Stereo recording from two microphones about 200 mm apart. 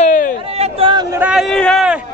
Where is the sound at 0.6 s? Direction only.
25° right (ahead or behind).